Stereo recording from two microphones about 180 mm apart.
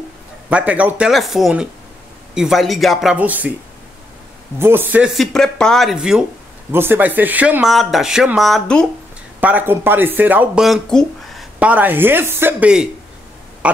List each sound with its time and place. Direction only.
0.5 s speech: 10° right (ahead or behind)
4.6 s speech: 10° right (ahead or behind)
9.4 s speech: 10° right (ahead or behind)
11.6 s speech: 10° right (ahead or behind)